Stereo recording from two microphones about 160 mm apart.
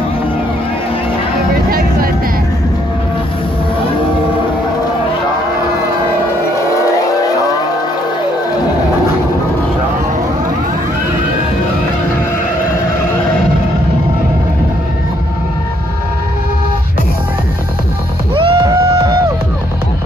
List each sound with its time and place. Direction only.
1.7 s music: 65° right (ahead or behind)
18.3 s music: 35° right (ahead or behind)